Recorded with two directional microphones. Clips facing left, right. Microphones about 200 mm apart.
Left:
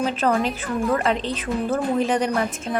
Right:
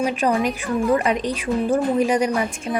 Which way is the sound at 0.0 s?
15° right (ahead or behind).